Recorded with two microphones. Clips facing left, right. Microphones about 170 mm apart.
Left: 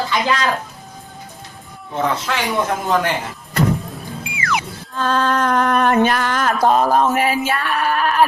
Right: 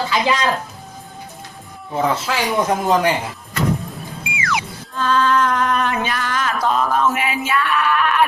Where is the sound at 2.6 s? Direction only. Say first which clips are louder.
Right 2 dB; 15° right (ahead or behind).